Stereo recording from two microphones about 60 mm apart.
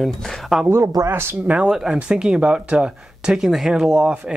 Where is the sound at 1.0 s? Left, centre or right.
Right.